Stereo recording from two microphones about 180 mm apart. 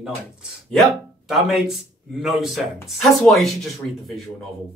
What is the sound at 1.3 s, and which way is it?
Speech, centre (ahead or behind).